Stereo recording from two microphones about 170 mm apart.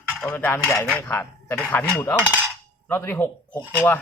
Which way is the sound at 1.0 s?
15° left (ahead or behind).